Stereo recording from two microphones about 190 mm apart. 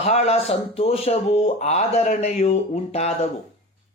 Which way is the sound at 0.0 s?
35° left (ahead or behind).